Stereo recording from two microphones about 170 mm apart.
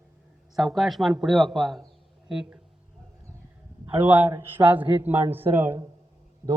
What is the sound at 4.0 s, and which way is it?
A man's voice, 10° right (ahead or behind).